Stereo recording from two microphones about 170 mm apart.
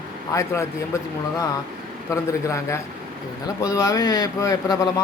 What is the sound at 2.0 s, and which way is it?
A man's voice, 15° left (ahead or behind).